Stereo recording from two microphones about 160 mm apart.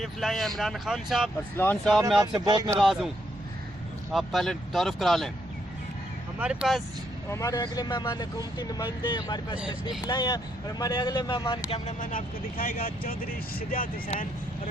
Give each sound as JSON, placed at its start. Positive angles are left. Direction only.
{"t": 0.0, "sound": "speech", "side_deg": 0}
{"t": 1.5, "sound": "speech", "side_deg": 10}
{"t": 2.4, "sound": "speech", "side_deg": -25}
{"t": 2.7, "sound": "speech", "side_deg": -5}
{"t": 4.1, "sound": "speech", "side_deg": 0}
{"t": 6.4, "sound": "speech", "side_deg": -5}
{"t": 7.3, "sound": "speech", "side_deg": 20}
{"t": 11.7, "sound": "speech", "side_deg": 50}